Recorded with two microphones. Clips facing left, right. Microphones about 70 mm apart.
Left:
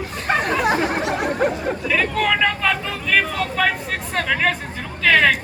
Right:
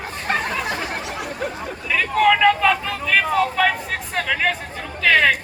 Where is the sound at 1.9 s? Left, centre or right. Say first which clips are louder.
Right 4 dB; centre.